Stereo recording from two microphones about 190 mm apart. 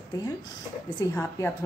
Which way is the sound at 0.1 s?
20° left (ahead or behind).